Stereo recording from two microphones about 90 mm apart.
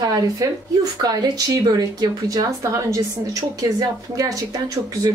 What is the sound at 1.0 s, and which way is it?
Speech, 45° right (ahead or behind).